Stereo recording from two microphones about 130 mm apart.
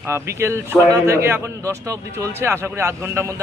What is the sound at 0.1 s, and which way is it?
A man's voice, 20° right (ahead or behind).